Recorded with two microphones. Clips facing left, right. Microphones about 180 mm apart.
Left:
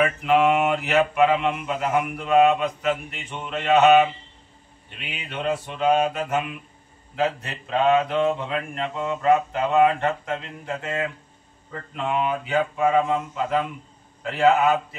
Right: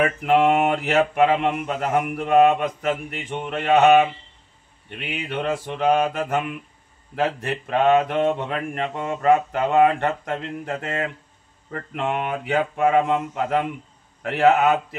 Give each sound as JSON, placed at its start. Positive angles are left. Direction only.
{"t": 0.0, "sound": "speech", "side_deg": -50}
{"t": 4.8, "sound": "mantra", "side_deg": -60}
{"t": 14.2, "sound": "mantra", "side_deg": -65}